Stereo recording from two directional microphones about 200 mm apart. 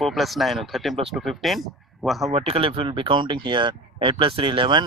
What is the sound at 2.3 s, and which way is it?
Speech, 30° right (ahead or behind).